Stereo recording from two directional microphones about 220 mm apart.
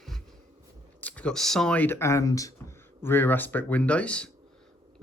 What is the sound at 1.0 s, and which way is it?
Speech, 5° left (ahead or behind).